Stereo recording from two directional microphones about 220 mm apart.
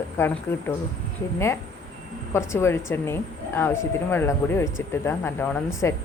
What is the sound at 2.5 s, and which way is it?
Speech, 10° left (ahead or behind).